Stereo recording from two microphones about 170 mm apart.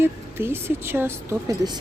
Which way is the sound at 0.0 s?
15° right (ahead or behind).